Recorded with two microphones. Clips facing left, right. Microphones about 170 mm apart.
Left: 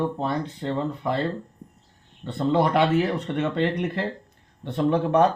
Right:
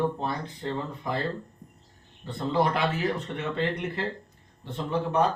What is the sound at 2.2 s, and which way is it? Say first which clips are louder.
Speech: left 4 dB; 70° left (ahead or behind).